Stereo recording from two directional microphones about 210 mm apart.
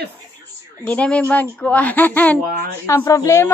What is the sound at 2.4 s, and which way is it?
Speech, 45° right (ahead or behind).